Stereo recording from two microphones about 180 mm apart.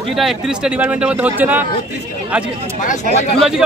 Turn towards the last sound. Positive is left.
turn(degrees=0)  # may be behind; listen again after turning